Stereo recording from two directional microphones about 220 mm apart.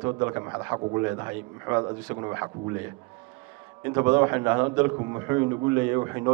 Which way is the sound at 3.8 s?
15° right (ahead or behind).